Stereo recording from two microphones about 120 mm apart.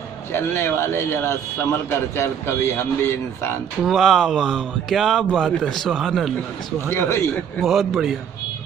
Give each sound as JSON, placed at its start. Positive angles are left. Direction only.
{"t": 0.3, "sound": "a man's voice", "side_deg": 20}
{"t": 3.8, "sound": "speech", "side_deg": 0}
{"t": 6.9, "sound": "a man's voice", "side_deg": 20}
{"t": 7.6, "sound": "speech", "side_deg": 0}